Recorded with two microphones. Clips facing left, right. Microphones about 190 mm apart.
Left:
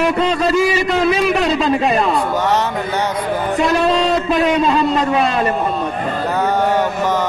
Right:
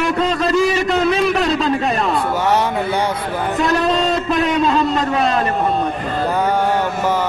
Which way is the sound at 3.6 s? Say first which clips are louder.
Left 1 dB; centre (ahead or behind).